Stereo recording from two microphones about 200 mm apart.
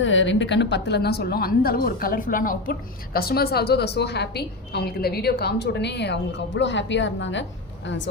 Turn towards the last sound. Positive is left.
turn(degrees=65)  # may be behind; listen again after turning